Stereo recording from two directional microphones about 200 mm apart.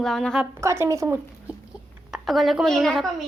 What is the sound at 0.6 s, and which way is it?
Speech, 15° right (ahead or behind).